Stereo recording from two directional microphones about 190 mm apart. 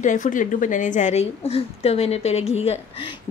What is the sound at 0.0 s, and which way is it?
A woman's voice, 40° left (ahead or behind).